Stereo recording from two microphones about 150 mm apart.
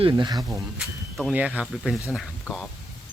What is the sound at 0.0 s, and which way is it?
Speech, 30° right (ahead or behind).